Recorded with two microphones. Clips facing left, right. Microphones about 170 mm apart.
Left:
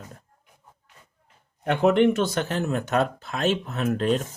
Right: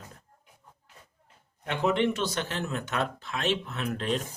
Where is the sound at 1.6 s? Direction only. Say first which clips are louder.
Left 7 dB; 55° left (ahead or behind).